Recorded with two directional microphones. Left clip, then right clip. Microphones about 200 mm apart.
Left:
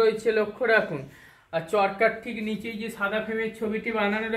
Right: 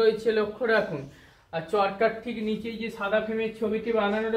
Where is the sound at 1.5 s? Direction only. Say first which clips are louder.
Left 2 dB; 50° left (ahead or behind).